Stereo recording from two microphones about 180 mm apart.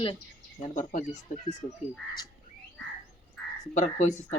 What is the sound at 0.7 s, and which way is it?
A woman's voice, 45° left (ahead or behind).